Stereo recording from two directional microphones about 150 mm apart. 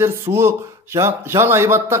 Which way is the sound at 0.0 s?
15° right (ahead or behind).